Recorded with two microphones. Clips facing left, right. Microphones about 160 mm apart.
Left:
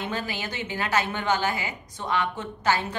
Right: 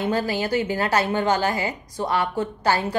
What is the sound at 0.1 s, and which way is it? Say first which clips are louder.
A woman's voice: right 9 dB; 40° right (ahead or behind).